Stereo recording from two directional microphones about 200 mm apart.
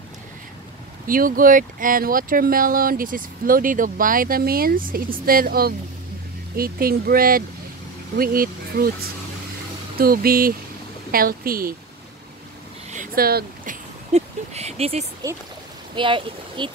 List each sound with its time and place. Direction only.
1.0 s speech: 45° right (ahead or behind)
9.9 s speech: 50° right (ahead or behind)
12.9 s a sound: 45° right (ahead or behind)
14.1 s speech: 30° right (ahead or behind)